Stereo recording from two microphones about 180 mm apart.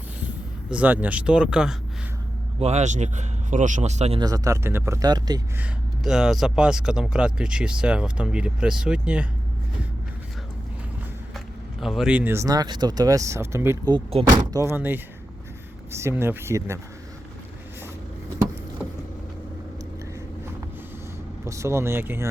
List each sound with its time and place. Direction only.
0.7 s speech: 10° right (ahead or behind)
2.6 s speech: 40° right (ahead or behind)
4.2 s speech: 20° right (ahead or behind)
5.5 s speech: 5° right (ahead or behind)
11.3 s speech: centre (ahead or behind)
13.9 s speech: 35° right (ahead or behind)
14.5 s speech: 15° right (ahead or behind)
21.4 s speech: 15° right (ahead or behind)